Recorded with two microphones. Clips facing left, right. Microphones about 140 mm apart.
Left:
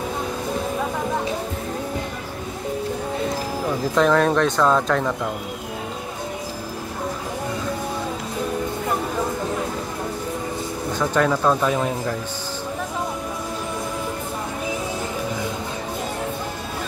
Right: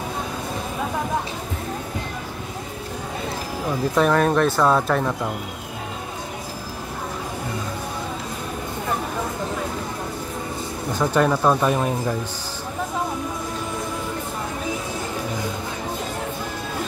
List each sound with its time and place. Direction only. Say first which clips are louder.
3.9 s speech: left 1 dB; 5° right (ahead or behind)
11.0 s speech: right 1 dB; 10° right (ahead or behind)